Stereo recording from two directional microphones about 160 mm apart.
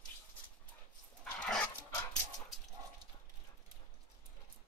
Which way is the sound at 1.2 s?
5° left (ahead or behind).